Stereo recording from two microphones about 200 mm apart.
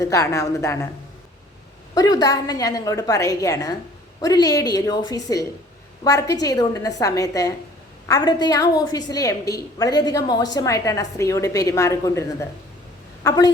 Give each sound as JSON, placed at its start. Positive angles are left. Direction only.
{"t": 0.0, "sound": "a woman's voice", "side_deg": 15}
{"t": 2.0, "sound": "a woman's voice", "side_deg": 20}